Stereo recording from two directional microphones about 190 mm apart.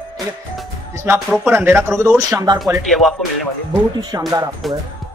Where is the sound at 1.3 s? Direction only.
10° right (ahead or behind).